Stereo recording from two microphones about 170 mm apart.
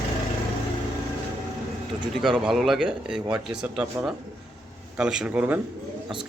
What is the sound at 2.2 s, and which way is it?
Speech, centre (ahead or behind).